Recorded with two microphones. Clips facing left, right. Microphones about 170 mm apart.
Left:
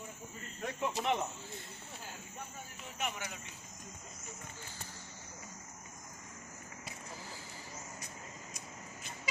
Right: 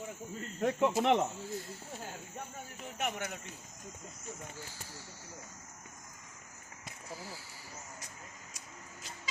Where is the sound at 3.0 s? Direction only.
55° right (ahead or behind).